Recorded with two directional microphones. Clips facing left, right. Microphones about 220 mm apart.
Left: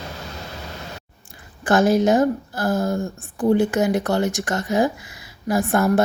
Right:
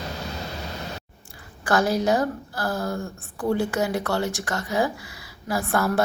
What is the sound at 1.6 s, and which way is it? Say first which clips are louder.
A woman's voice: left 5 dB; 20° left (ahead or behind).